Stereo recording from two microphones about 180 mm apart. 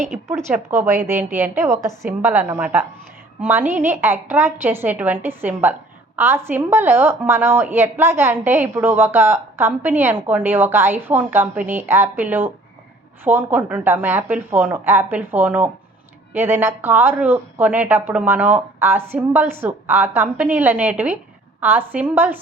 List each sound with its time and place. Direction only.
0.3 s a woman's voice: 15° right (ahead or behind)